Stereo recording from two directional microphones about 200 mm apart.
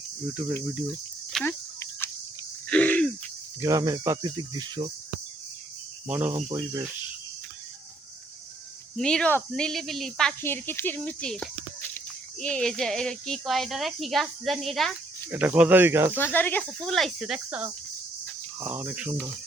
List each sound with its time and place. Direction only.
0.6 s speech: 5° right (ahead or behind)
1.3 s cricket: 5° left (ahead or behind)
3.6 s speech: 15° right (ahead or behind)
6.1 s speech: 10° right (ahead or behind)
6.5 s speech: 20° right (ahead or behind)
9.0 s speech: 5° left (ahead or behind); by 16.1 s 10° right (ahead or behind)
16.1 s speech: 10° left (ahead or behind); by 19.1 s 10° right (ahead or behind)